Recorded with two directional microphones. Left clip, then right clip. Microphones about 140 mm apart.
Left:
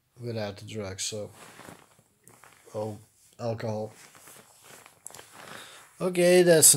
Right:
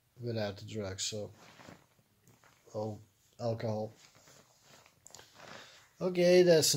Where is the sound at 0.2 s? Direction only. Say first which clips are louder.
Left 3 dB; 5° left (ahead or behind).